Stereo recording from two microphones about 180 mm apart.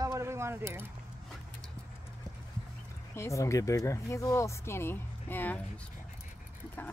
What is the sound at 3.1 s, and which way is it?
Speech, 15° left (ahead or behind).